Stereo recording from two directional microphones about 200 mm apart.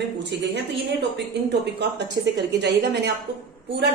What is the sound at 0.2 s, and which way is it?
A woman's voice, 55° right (ahead or behind).